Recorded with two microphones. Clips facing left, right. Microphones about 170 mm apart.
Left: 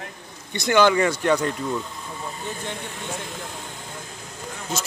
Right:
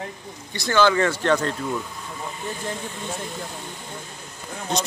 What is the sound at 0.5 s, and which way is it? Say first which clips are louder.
Speech: left 1 dB; 15° left (ahead or behind).